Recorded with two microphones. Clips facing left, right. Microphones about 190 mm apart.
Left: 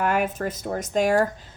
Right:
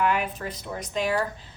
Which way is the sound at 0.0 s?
45° left (ahead or behind).